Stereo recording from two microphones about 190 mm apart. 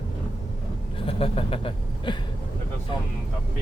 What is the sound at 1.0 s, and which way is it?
Speech, 30° left (ahead or behind).